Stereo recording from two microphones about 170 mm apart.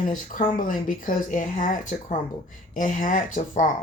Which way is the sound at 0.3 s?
50° left (ahead or behind).